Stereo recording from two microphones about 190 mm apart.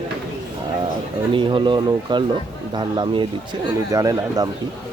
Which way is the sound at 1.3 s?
25° right (ahead or behind).